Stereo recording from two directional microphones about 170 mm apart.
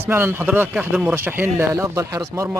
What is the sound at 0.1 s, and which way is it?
Speech, 15° right (ahead or behind).